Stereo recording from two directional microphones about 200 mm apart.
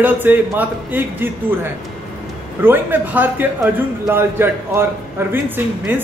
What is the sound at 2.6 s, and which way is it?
A man's voice, 10° right (ahead or behind).